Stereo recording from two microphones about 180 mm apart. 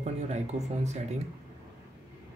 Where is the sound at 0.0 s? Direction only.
40° right (ahead or behind).